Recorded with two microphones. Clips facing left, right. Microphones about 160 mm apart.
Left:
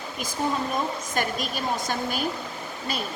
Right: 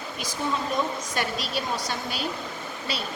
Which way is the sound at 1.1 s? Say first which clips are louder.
Left 2 dB; 50° left (ahead or behind).